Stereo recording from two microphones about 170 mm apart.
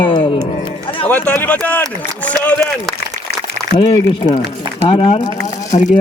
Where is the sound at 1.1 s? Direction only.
10° left (ahead or behind).